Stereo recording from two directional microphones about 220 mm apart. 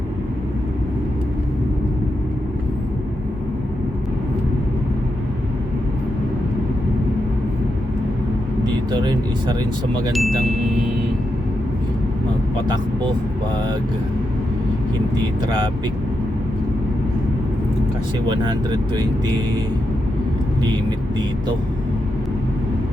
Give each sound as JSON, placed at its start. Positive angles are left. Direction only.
{"t": 8.6, "sound": "vehicle", "side_deg": -20}
{"t": 10.1, "sound": "speech", "side_deg": 0}
{"t": 18.3, "sound": "speech", "side_deg": -20}